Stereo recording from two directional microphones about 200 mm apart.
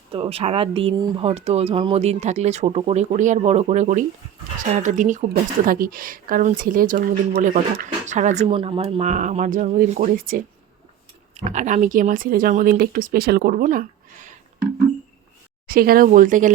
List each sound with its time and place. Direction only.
0.1 s speech: 30° right (ahead or behind)
15.6 s speech: 45° right (ahead or behind)